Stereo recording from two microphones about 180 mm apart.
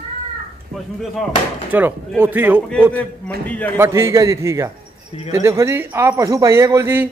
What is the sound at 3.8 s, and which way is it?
A man's voice, 15° right (ahead or behind).